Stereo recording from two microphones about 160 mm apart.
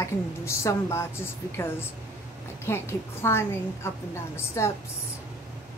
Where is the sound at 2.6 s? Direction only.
15° left (ahead or behind).